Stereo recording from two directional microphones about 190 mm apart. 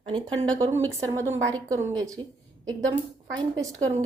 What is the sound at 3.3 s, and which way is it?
Speech, 20° right (ahead or behind).